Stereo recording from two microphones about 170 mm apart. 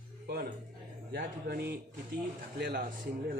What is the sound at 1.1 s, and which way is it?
Speech, 65° right (ahead or behind).